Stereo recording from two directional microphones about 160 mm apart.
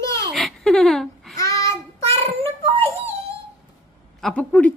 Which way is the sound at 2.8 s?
15° left (ahead or behind).